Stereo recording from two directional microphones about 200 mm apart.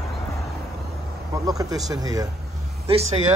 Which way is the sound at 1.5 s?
15° right (ahead or behind).